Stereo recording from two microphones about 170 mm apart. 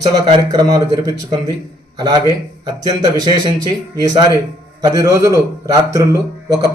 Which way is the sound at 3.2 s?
25° right (ahead or behind).